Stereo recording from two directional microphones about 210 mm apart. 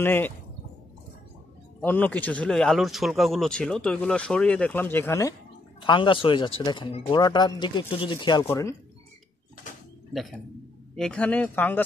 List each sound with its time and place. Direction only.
0.0 s speech: 10° left (ahead or behind)
1.8 s speech: 10° left (ahead or behind)
5.8 s speech: 25° left (ahead or behind)
10.1 s speech: centre (ahead or behind)